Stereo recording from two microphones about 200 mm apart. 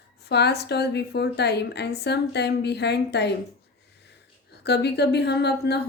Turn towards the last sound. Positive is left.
turn(degrees=55)  # may be behind; listen again after turning